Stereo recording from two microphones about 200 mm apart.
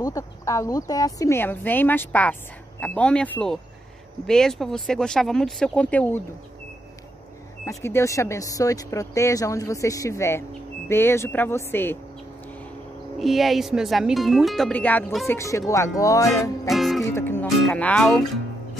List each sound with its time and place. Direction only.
0.0 s speech: 15° left (ahead or behind)
7.6 s speech: 15° left (ahead or behind)
13.2 s speech: centre (ahead or behind); by 16.5 s 15° left (ahead or behind)
16.6 s speech: centre (ahead or behind)
17.0 s speech: 10° left (ahead or behind)